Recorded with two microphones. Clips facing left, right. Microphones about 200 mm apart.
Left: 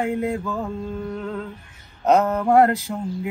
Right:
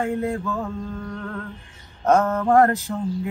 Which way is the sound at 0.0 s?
15° left (ahead or behind).